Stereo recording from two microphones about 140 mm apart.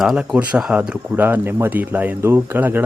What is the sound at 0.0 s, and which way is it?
Speech, centre (ahead or behind).